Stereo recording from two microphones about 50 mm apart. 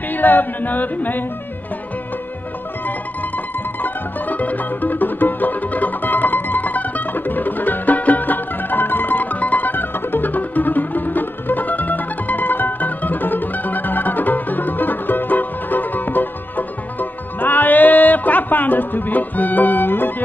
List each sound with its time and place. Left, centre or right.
0.1 s a capella: left
3.8 s music: left